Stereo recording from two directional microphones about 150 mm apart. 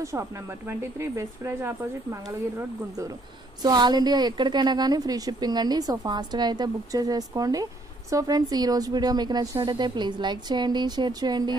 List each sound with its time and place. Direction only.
0.0 s a woman's voice: 20° right (ahead or behind)